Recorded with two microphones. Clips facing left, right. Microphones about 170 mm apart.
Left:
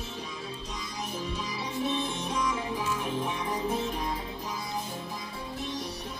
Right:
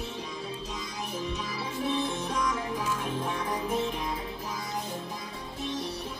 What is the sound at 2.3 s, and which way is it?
Music, 25° left (ahead or behind).